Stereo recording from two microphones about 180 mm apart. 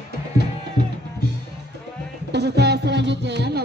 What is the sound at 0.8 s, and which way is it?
Music, 45° left (ahead or behind).